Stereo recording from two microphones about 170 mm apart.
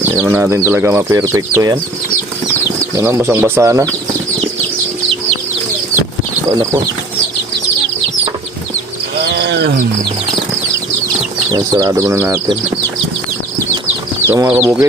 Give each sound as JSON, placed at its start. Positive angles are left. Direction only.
{"t": 0.0, "sound": "speech", "side_deg": -15}
{"t": 2.9, "sound": "speech", "side_deg": -15}
{"t": 6.5, "sound": "speech", "side_deg": -20}
{"t": 9.2, "sound": "wild animals", "side_deg": -75}
{"t": 11.5, "sound": "speech", "side_deg": -20}
{"t": 14.3, "sound": "speech", "side_deg": -10}